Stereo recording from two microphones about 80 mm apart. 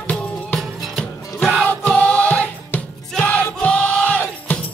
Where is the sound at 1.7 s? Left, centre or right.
Centre.